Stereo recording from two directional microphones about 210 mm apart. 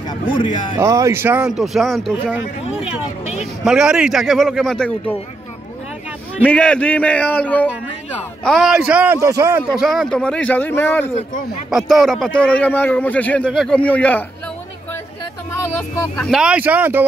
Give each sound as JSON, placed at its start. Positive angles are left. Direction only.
{"t": 0.7, "sound": "a man's voice", "side_deg": -15}
{"t": 3.6, "sound": "a man's voice", "side_deg": -5}
{"t": 6.4, "sound": "a man's voice", "side_deg": 5}
{"t": 9.8, "sound": "a man's voice", "side_deg": 0}
{"t": 11.1, "sound": "a man's voice", "side_deg": 35}
{"t": 11.7, "sound": "a man's voice", "side_deg": 0}
{"t": 16.3, "sound": "speech", "side_deg": -5}